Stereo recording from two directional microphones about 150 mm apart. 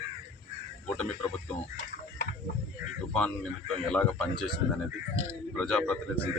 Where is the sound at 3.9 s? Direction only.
5° left (ahead or behind).